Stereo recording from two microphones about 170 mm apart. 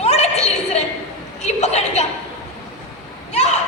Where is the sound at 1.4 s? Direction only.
40° left (ahead or behind).